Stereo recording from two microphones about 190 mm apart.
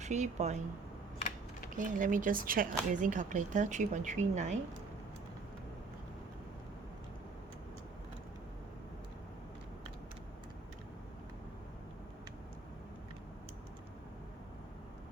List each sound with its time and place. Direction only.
0.0 s speech: 40° right (ahead or behind)
1.7 s speech: 45° right (ahead or behind)